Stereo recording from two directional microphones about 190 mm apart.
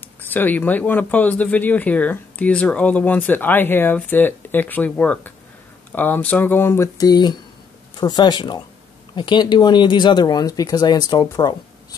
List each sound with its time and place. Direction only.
0.2 s speech: 10° left (ahead or behind)